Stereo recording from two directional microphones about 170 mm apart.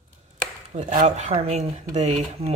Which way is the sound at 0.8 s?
45° right (ahead or behind).